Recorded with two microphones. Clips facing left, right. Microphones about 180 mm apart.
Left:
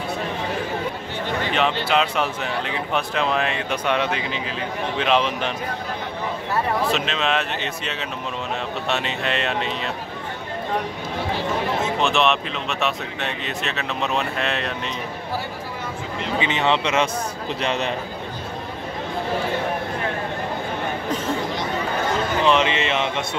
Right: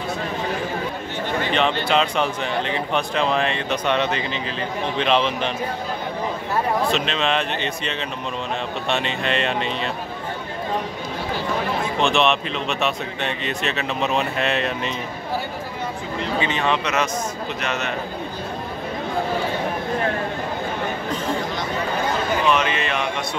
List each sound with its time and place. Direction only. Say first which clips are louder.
1.5 s speech: right 1 dB; 5° left (ahead or behind)
6.9 s speech: right 1 dB; 5° left (ahead or behind)
12.0 s speech: right 2 dB; centre (ahead or behind)
16.3 s a man's voice: left 2 dB; 20° left (ahead or behind)
22.4 s speech: left 4 dB; 25° left (ahead or behind)